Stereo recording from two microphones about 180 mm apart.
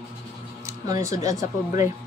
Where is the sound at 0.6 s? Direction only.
15° right (ahead or behind).